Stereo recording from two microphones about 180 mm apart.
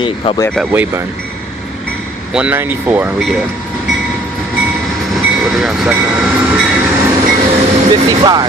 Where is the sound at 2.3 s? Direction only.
10° right (ahead or behind).